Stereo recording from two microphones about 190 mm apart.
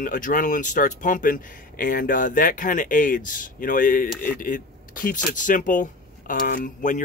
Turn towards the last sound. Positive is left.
turn(degrees=45)  # may be behind; listen again after turning